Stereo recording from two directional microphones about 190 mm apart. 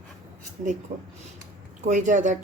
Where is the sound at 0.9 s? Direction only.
45° right (ahead or behind).